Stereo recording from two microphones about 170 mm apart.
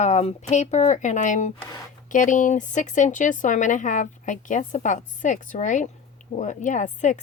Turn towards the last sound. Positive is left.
turn(degrees=45)  # may be behind; listen again after turning